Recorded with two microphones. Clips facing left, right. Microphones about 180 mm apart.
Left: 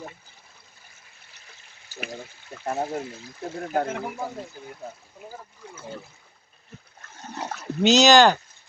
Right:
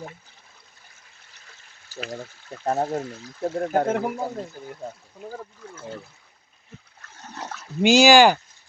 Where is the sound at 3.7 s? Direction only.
50° right (ahead or behind).